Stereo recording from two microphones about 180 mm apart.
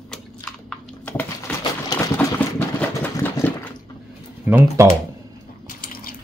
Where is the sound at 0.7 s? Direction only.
10° left (ahead or behind).